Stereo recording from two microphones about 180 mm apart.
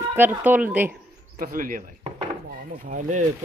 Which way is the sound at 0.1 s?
10° right (ahead or behind).